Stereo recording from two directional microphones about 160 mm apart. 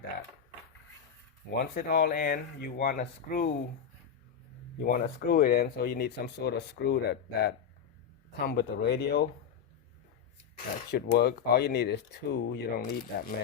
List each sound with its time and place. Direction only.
1.5 s speech: 75° left (ahead or behind)
4.8 s speech: 70° left (ahead or behind); by 9.2 s 90° left
10.9 s speech: 85° left; by 13.3 s 70° left (ahead or behind)